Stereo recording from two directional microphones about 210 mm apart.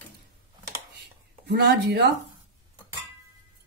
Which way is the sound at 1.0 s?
55° right (ahead or behind).